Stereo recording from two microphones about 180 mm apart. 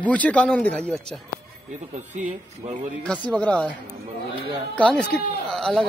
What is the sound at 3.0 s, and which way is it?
Speech, 5° left (ahead or behind).